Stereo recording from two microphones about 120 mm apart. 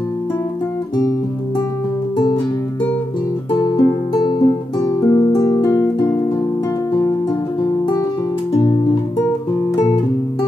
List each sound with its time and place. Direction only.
2.1 s music: 40° left (ahead or behind)
3.7 s music: 40° left (ahead or behind)
4.8 s music: 25° left (ahead or behind)
6.9 s music: 30° left (ahead or behind)